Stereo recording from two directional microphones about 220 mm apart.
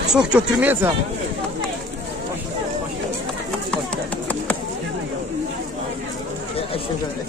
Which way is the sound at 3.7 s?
5° left (ahead or behind).